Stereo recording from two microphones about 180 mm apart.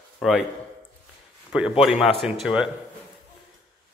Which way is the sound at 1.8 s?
Centre (ahead or behind).